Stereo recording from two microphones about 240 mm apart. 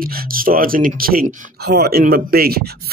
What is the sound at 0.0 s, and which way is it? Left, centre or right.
Speech, right.